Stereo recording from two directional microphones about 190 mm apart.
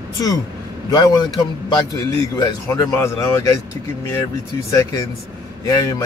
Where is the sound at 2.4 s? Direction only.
20° left (ahead or behind).